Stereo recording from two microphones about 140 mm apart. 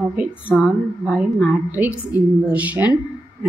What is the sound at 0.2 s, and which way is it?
A woman's voice, 5° right (ahead or behind).